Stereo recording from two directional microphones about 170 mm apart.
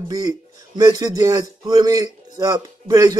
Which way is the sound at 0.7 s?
20° right (ahead or behind).